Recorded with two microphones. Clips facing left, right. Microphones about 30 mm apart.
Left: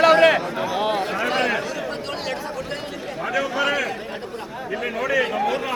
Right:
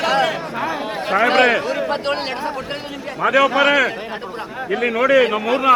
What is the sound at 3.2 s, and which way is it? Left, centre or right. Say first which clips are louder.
A man's voice: right 8 dB; right.